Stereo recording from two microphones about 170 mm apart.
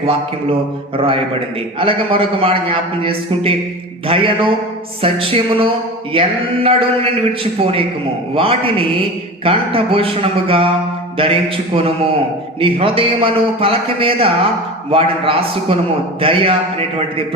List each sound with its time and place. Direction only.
0.9 s a man's voice: 30° right (ahead or behind)
8.4 s a man's voice: 35° right (ahead or behind)